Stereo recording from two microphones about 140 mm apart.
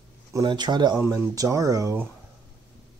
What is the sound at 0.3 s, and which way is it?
Speech, 30° right (ahead or behind).